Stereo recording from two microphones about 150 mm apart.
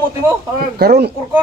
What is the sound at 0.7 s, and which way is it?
Speech, 90° right.